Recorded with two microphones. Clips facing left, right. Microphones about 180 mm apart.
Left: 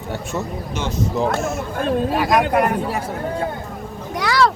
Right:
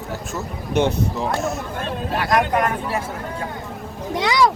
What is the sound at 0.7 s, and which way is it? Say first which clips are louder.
Speech: right 6 dB; 60° right (ahead or behind).